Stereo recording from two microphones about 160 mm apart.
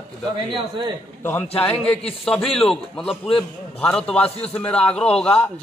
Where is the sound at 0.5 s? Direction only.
30° right (ahead or behind).